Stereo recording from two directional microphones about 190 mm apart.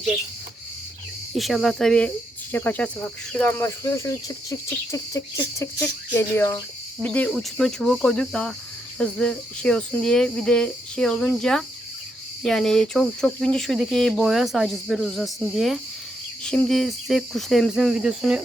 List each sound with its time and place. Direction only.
1.3 s speech: centre (ahead or behind)
3.8 s cricket: 15° left (ahead or behind)
7.0 s speech: 5° left (ahead or behind)